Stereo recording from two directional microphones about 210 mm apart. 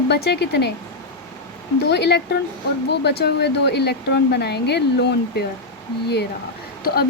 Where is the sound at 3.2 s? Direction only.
55° left (ahead or behind).